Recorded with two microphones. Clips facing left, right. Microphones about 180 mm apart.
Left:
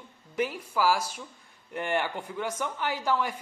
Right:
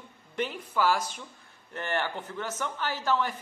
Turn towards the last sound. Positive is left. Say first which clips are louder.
# even
turn(degrees=10)  # may be behind; listen again after turning